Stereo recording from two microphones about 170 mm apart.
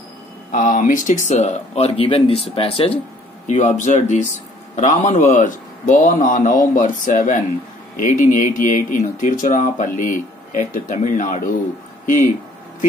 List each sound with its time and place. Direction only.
0.5 s speech: 50° left (ahead or behind)